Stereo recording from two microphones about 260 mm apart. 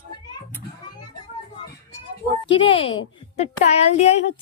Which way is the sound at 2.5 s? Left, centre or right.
Left.